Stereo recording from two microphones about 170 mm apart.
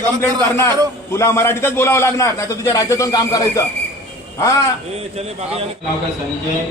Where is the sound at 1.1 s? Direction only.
15° left (ahead or behind).